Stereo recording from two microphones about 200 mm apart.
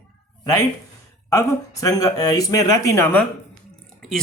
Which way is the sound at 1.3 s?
15° left (ahead or behind).